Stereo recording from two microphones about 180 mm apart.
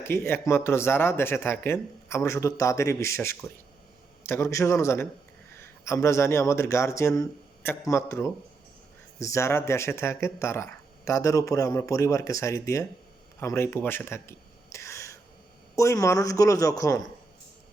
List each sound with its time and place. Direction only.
0.0 s speech: 15° left (ahead or behind)